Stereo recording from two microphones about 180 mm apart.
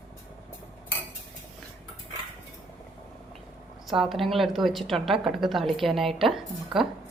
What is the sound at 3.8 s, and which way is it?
A woman's voice, centre (ahead or behind).